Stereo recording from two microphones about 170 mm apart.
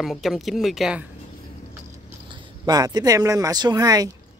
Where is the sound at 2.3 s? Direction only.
20° right (ahead or behind).